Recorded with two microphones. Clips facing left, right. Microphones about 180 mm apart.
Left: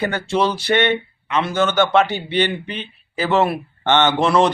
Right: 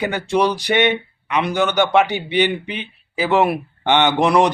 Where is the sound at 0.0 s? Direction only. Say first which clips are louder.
Right 1 dB; 15° right (ahead or behind).